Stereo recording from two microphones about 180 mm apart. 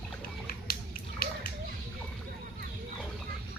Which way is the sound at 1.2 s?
55° left (ahead or behind).